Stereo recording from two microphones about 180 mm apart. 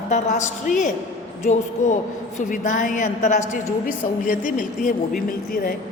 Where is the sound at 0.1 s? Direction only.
40° left (ahead or behind).